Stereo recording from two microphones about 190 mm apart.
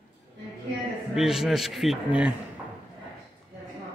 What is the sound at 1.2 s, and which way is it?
Speech, centre (ahead or behind).